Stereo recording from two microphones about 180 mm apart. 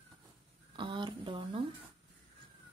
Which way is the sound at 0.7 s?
25° right (ahead or behind).